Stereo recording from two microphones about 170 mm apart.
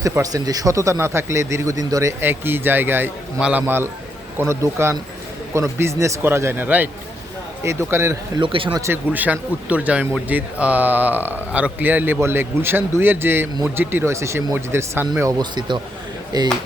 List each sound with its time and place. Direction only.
0.0 s speech: 20° right (ahead or behind)
8.4 s speech: 30° right (ahead or behind)
9.1 s speech: 10° right (ahead or behind); by 16.5 s 25° right (ahead or behind)